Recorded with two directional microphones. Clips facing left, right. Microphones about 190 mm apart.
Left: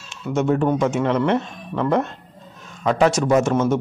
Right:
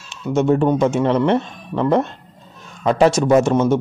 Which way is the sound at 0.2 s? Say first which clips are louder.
Right 3 dB; 30° right (ahead or behind).